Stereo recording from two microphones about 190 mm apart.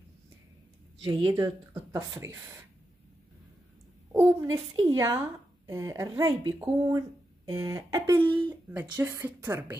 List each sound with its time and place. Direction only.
1.0 s speech: 20° right (ahead or behind)
4.1 s a woman's voice: 15° right (ahead or behind)